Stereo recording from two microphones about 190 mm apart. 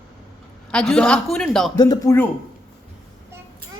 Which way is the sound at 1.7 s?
20° left (ahead or behind).